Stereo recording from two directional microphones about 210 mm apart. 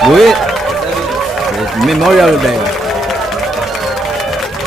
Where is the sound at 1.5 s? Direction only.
Centre (ahead or behind).